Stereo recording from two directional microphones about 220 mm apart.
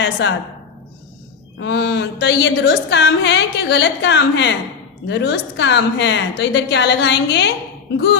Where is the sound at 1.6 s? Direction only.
50° left (ahead or behind).